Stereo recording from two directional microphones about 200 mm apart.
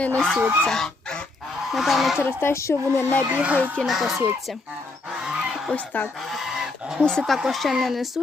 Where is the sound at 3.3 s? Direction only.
5° right (ahead or behind).